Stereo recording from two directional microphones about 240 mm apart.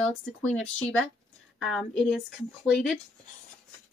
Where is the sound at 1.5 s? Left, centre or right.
Centre.